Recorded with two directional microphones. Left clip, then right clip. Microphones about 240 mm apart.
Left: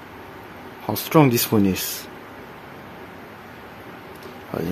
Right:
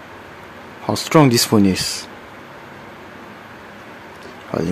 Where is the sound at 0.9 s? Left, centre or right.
Centre.